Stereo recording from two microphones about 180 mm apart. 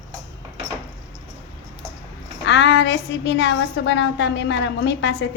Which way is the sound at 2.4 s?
85° left.